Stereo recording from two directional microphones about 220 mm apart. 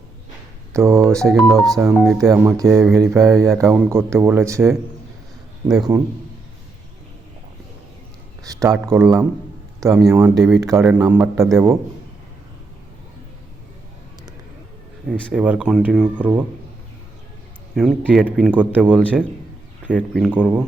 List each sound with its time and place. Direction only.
0.7 s speech: 15° right (ahead or behind)
1.4 s speech: centre (ahead or behind)
1.7 s speech: 15° right (ahead or behind)
5.9 s speech: 10° right (ahead or behind)
8.4 s speech: 15° right (ahead or behind)
15.1 s speech: 5° left (ahead or behind)
17.7 s speech: centre (ahead or behind)